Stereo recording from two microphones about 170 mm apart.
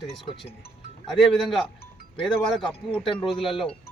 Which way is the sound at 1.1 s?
Centre (ahead or behind).